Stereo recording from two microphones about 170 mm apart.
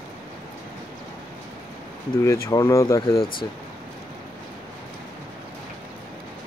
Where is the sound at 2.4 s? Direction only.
15° left (ahead or behind).